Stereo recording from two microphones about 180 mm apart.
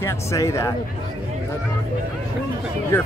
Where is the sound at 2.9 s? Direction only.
15° left (ahead or behind).